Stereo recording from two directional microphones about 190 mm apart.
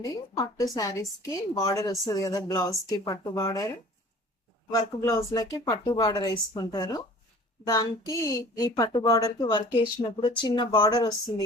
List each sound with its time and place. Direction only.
0.0 s a woman's voice: 20° left (ahead or behind)
4.7 s speech: 15° left (ahead or behind)